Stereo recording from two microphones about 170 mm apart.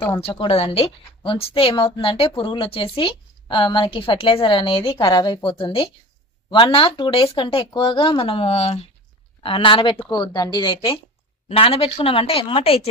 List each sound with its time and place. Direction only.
0.3 s a woman's voice: 30° left (ahead or behind)